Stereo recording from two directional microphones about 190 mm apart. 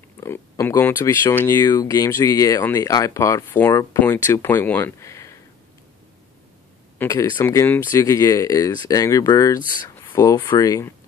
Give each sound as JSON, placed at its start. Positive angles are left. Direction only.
{"t": 0.2, "sound": "speech", "side_deg": 15}
{"t": 7.0, "sound": "speech", "side_deg": 20}